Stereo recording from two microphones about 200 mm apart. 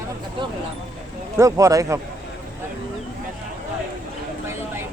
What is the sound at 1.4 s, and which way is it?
Speech, 15° right (ahead or behind).